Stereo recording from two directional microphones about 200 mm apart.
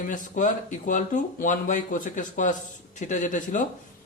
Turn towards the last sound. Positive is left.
turn(degrees=40)  # may be behind; listen again after turning